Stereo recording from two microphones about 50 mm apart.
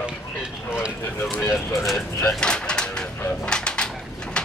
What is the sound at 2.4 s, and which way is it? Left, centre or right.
Pigeon, centre.